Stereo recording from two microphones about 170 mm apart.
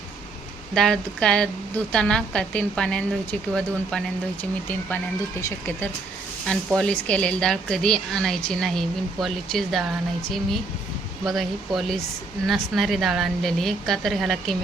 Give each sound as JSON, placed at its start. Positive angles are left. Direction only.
{"t": 0.7, "sound": "a woman's voice", "side_deg": 5}
{"t": 5.4, "sound": "speech", "side_deg": 15}
{"t": 6.5, "sound": "a woman's voice", "side_deg": 5}